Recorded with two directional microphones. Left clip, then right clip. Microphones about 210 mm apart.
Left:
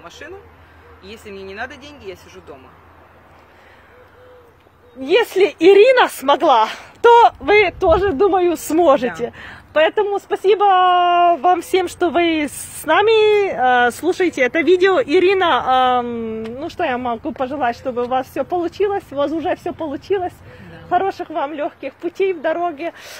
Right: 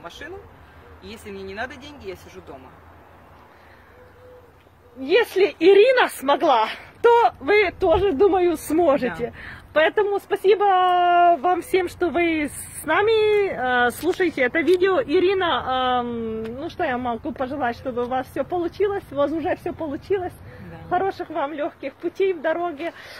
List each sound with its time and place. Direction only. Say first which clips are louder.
0.2 s speech: left 2 dB; 10° right (ahead or behind)
5.0 s speech: left 4 dB; 35° left (ahead or behind)